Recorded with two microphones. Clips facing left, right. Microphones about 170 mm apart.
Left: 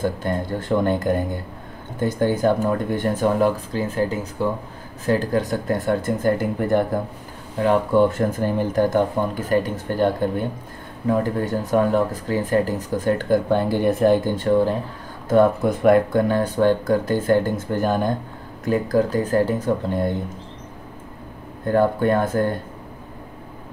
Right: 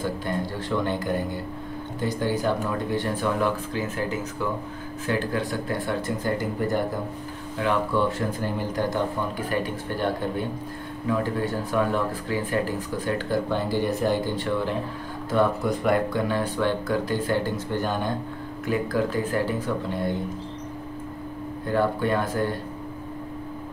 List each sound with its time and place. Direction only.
0.0 s speech: 50° left (ahead or behind)
21.6 s speech: 50° left (ahead or behind)